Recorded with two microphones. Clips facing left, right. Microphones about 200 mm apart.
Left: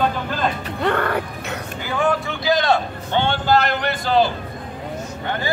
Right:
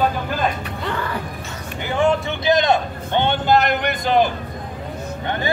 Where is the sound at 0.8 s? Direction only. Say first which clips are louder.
Left 5 dB; 60° left (ahead or behind).